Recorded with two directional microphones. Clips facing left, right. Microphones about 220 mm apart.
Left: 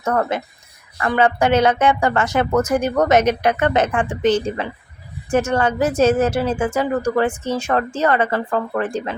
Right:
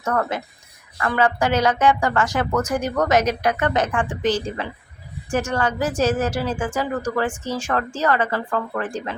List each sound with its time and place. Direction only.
0.0 s a woman's voice: 25° left (ahead or behind)